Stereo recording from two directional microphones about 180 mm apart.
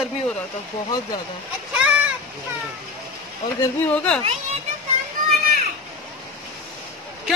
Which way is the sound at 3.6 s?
10° left (ahead or behind).